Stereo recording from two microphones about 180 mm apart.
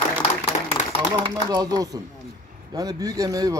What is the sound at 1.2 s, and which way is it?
A man's voice, 20° right (ahead or behind).